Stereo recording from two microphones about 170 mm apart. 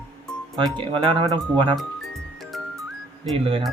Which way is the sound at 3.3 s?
35° right (ahead or behind).